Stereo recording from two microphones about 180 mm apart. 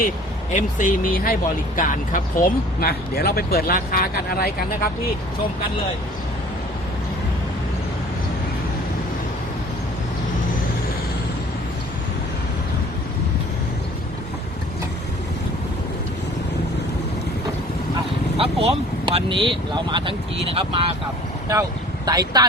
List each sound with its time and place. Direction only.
0.5 s speech: 45° left (ahead or behind)
18.3 s speech: 30° right (ahead or behind)
22.0 s speech: 20° right (ahead or behind)